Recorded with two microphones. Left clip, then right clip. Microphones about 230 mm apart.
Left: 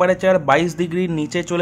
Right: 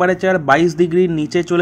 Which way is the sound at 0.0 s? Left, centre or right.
Centre.